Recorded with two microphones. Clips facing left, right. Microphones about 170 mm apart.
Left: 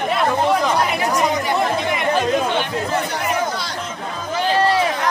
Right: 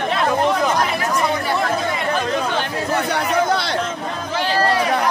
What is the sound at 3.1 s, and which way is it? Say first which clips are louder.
Chatter: right 4 dB; 65° right (ahead or behind).